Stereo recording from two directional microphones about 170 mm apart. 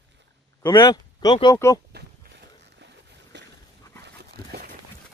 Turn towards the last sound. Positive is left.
turn(degrees=-65)  # may be behind; listen again after turning